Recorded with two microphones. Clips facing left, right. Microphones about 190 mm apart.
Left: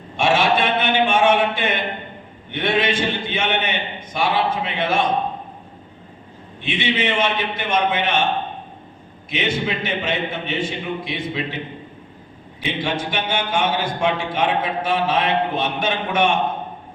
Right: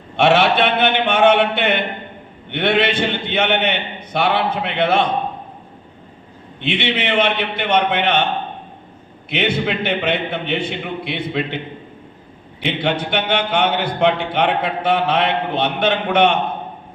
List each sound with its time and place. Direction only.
0.2 s a man's voice: 65° right (ahead or behind)
6.6 s a man's voice: 65° right (ahead or behind)
9.3 s a man's voice: 65° right (ahead or behind)
12.6 s a man's voice: 65° right (ahead or behind)